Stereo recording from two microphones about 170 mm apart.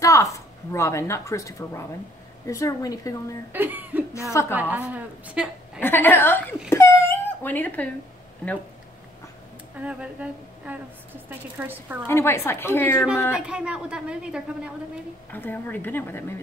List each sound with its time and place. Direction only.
0.0 s a woman's voice: 20° left (ahead or behind)
3.5 s a woman's voice: 10° right (ahead or behind)
4.3 s speech: 15° left (ahead or behind)
4.6 s a woman's voice: 10° right (ahead or behind)
5.8 s speech: 10° left (ahead or behind)
6.7 s a sound: 15° left (ahead or behind)
9.8 s a woman's voice: 5° right (ahead or behind)
12.1 s speech: 15° left (ahead or behind)
13.5 s a woman's voice: 5° right (ahead or behind)
15.3 s speech: 10° left (ahead or behind)